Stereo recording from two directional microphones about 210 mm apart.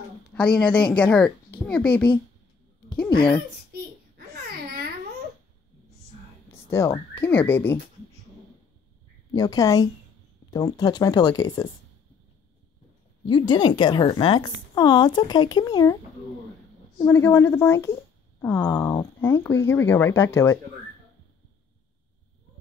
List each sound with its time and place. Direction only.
0.3 s a woman's voice: 5° left (ahead or behind)
6.5 s speech: 10° left (ahead or behind)
9.3 s speech: 15° left (ahead or behind)
13.3 s speech: 20° left (ahead or behind)
17.0 s speech: 10° left (ahead or behind)